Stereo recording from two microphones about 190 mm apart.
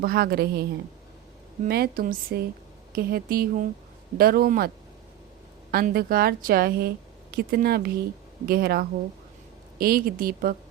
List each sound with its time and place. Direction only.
0.0 s a woman's voice: 55° right (ahead or behind)
5.7 s a woman's voice: 55° right (ahead or behind)